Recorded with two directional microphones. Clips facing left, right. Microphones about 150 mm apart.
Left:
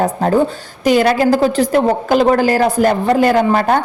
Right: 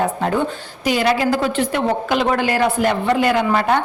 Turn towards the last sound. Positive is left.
turn(degrees=40)  # may be behind; listen again after turning